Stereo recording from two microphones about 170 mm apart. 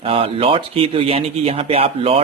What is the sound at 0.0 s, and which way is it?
Speech, 35° right (ahead or behind).